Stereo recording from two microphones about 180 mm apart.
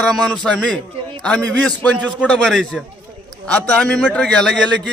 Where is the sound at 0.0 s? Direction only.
5° left (ahead or behind).